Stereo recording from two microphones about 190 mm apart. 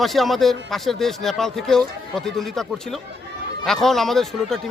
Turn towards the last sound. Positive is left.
turn(degrees=0)  # may be behind; listen again after turning